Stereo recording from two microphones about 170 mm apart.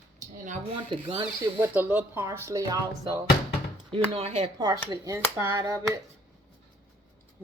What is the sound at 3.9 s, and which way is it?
Speech, 35° right (ahead or behind).